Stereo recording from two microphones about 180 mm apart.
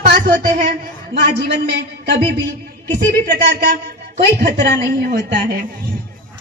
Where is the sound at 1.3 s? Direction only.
70° right (ahead or behind).